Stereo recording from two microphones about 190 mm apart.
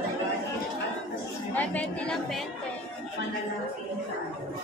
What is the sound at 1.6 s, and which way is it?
Speech, 5° left (ahead or behind).